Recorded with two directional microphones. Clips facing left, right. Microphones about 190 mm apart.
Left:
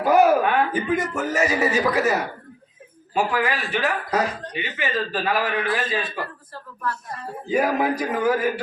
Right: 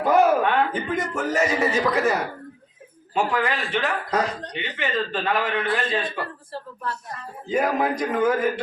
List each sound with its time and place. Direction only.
0.0 s a man's voice: 5° left (ahead or behind)
3.2 s speech: 5° left (ahead or behind)
7.4 s speech: 5° left (ahead or behind)